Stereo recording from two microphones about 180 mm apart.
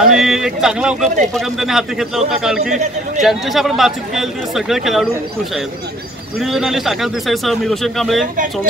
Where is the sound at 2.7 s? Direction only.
40° right (ahead or behind).